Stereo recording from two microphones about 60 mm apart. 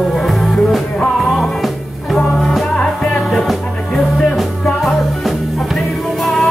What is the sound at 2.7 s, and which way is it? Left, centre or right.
Music, centre.